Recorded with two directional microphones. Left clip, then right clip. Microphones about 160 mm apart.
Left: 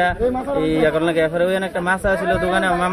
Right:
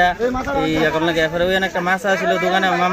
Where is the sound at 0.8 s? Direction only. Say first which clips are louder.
Even; centre (ahead or behind).